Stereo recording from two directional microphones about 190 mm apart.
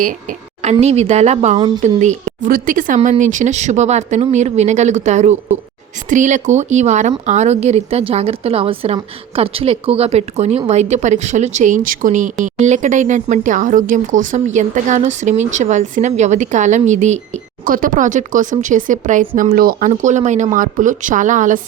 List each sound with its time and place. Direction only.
0.0 s speech: 45° right (ahead or behind)